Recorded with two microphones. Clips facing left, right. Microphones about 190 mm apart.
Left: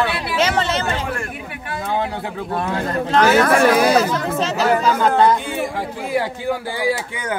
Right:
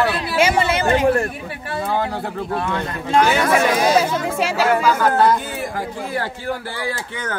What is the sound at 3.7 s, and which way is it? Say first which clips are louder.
Speech: left 3 dB; 60° left (ahead or behind).